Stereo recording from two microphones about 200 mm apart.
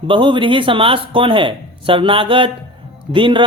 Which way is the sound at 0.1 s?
25° right (ahead or behind).